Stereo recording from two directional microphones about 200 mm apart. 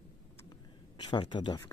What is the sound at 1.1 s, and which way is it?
Speech, 25° left (ahead or behind).